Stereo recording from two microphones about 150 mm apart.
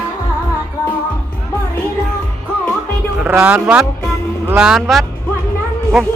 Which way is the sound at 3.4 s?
5° right (ahead or behind).